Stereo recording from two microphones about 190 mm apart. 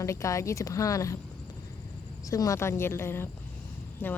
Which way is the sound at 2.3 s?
15° left (ahead or behind).